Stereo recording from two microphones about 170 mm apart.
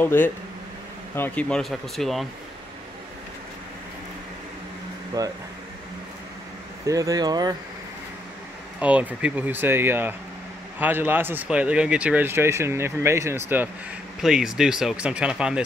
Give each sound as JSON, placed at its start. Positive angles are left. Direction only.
{"t": 0.0, "sound": "speech", "side_deg": 10}
{"t": 5.2, "sound": "speech", "side_deg": -20}
{"t": 6.9, "sound": "speech", "side_deg": -20}
{"t": 8.7, "sound": "speech", "side_deg": -5}
{"t": 14.2, "sound": "speech", "side_deg": -5}